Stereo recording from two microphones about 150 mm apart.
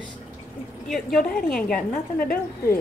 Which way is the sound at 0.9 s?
Centre (ahead or behind).